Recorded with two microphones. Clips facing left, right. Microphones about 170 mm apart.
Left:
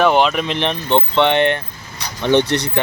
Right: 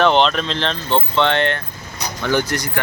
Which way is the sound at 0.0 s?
10° left (ahead or behind).